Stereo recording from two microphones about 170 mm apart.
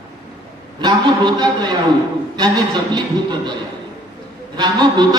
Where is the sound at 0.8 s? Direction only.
25° right (ahead or behind).